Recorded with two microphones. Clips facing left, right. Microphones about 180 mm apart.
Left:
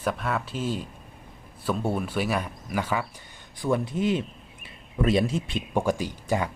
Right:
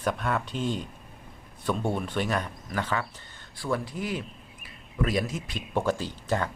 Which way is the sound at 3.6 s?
20° left (ahead or behind).